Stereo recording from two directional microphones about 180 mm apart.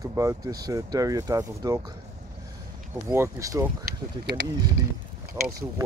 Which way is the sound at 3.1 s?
15° right (ahead or behind).